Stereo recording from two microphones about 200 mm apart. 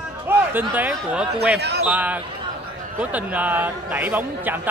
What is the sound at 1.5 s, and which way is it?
Speech, 55° right (ahead or behind).